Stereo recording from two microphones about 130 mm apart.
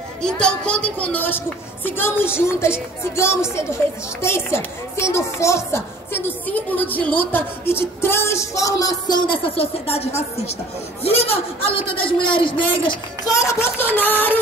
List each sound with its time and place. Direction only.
0.2 s a woman's voice: 5° left (ahead or behind); by 12.9 s 40° left (ahead or behind)
13.3 s a woman's voice: 25° left (ahead or behind)